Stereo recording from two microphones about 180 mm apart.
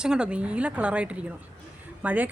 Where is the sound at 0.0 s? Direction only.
5° right (ahead or behind).